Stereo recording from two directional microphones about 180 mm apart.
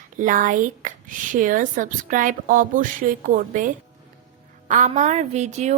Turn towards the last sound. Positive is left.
turn(degrees=-40)  # may be behind; listen again after turning